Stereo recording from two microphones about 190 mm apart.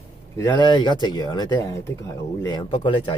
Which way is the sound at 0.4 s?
25° left (ahead or behind).